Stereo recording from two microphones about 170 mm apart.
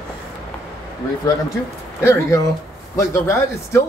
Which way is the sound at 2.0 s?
15° left (ahead or behind).